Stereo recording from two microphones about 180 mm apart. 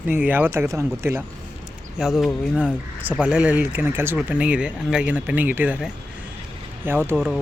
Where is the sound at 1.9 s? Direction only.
Centre (ahead or behind).